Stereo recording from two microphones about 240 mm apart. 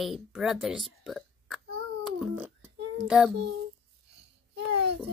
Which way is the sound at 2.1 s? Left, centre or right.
Centre.